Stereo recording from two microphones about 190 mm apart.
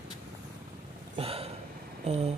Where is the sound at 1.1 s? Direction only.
30° right (ahead or behind).